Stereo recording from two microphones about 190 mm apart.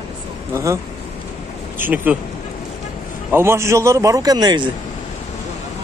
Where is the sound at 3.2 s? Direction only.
10° right (ahead or behind).